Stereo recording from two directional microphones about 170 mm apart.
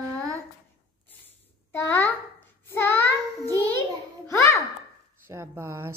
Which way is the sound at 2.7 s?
10° left (ahead or behind).